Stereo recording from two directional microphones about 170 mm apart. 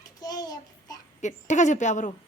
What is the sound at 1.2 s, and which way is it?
Speech, 45° left (ahead or behind).